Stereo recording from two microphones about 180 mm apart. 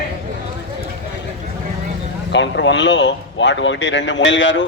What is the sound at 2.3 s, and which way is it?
Speech, 80° left.